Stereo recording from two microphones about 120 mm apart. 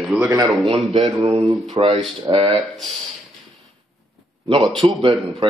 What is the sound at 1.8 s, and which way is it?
Speech, 45° right (ahead or behind).